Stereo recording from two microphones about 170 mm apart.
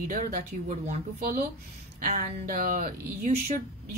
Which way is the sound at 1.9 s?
55° right (ahead or behind).